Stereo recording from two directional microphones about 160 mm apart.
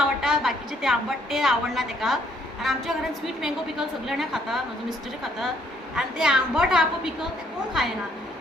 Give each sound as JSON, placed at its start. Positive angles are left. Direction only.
{"t": 0.0, "sound": "a woman's voice", "side_deg": -5}